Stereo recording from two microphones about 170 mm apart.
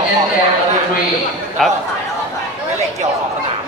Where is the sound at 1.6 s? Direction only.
Centre (ahead or behind).